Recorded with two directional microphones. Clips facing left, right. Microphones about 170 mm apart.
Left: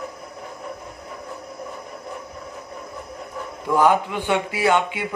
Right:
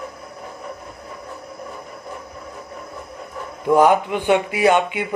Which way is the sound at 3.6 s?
20° right (ahead or behind).